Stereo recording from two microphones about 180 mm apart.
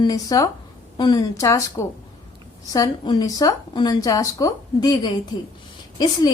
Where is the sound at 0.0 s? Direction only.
20° left (ahead or behind).